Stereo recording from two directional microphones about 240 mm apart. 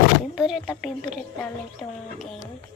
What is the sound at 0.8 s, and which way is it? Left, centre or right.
Speech, centre.